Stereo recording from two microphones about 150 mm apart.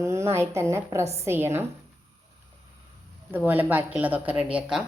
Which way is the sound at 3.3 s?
10° right (ahead or behind).